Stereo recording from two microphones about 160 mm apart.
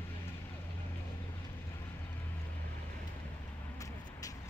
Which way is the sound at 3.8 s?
20° left (ahead or behind).